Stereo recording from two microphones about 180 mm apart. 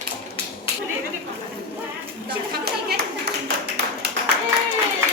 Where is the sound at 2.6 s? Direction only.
65° right (ahead or behind).